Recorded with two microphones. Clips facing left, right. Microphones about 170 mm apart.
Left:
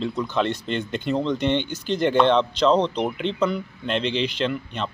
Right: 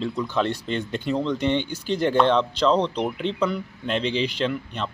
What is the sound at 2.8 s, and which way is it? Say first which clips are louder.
Speech: left 1 dB; 30° left (ahead or behind).